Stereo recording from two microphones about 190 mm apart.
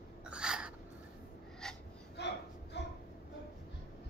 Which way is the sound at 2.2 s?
60° left (ahead or behind).